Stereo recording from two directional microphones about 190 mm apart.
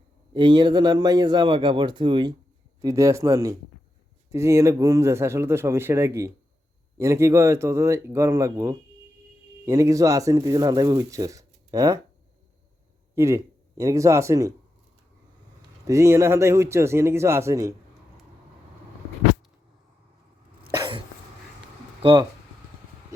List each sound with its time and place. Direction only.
0.3 s a man's voice: 25° right (ahead or behind)
13.1 s speech: 15° right (ahead or behind)
15.9 s speech: 15° right (ahead or behind)
20.7 s cough: 25° right (ahead or behind)
22.0 s speech: 20° right (ahead or behind)